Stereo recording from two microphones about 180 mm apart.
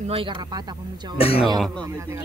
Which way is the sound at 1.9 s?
15° right (ahead or behind).